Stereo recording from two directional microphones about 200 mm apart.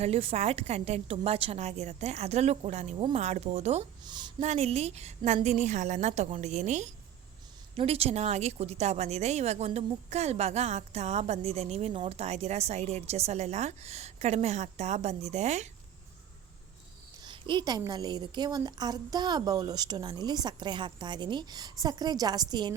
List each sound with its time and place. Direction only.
0.0 s a woman's voice: 30° right (ahead or behind)
4.0 s a woman's voice: 20° right (ahead or behind)
4.4 s a woman's voice: 35° right (ahead or behind)
17.2 s a woman's voice: 25° right (ahead or behind)